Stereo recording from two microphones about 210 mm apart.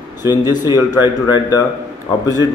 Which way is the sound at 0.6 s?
20° left (ahead or behind).